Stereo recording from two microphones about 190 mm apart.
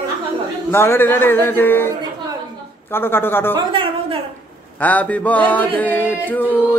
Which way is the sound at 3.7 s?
25° right (ahead or behind).